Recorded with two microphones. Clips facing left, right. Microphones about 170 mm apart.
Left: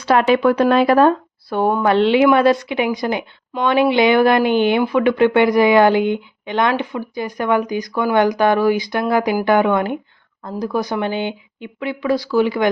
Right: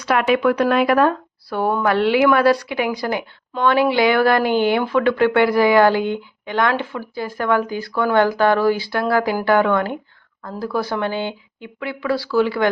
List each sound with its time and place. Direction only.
0.0 s a woman's voice: 30° left (ahead or behind); by 12.6 s 15° left (ahead or behind)